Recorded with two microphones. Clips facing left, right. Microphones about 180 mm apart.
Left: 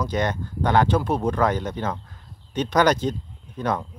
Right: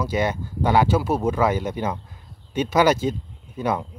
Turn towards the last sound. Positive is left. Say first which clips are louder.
# right 1 dB
turn(degrees=-10)  # may be behind; listen again after turning